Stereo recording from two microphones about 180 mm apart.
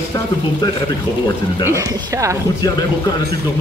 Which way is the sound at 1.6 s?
15° right (ahead or behind).